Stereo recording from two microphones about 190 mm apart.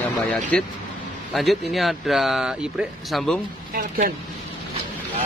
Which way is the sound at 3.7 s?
50° right (ahead or behind).